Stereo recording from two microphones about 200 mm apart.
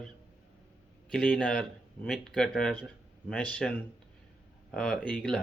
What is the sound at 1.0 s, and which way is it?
Speech, 5° left (ahead or behind).